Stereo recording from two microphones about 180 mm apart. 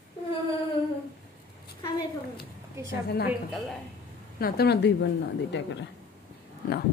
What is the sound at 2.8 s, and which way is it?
Speech, 15° right (ahead or behind).